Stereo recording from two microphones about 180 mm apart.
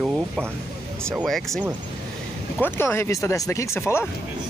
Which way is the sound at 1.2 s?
Centre (ahead or behind).